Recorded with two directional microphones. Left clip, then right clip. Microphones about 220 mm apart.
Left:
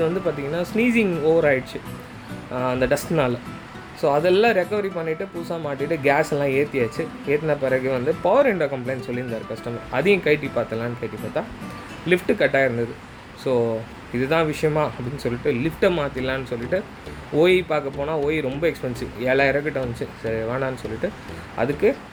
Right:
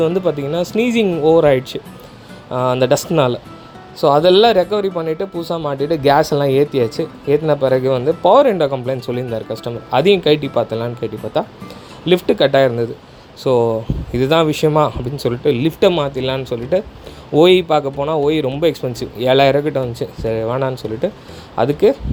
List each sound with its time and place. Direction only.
0.0 s speech: 25° right (ahead or behind)